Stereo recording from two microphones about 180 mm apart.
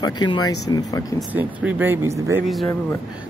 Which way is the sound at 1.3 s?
10° right (ahead or behind).